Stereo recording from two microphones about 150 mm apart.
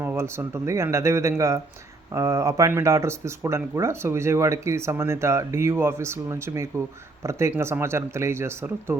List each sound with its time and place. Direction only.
0.0 s speech: 15° right (ahead or behind)